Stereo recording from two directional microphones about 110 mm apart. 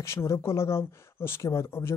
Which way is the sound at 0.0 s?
25° left (ahead or behind).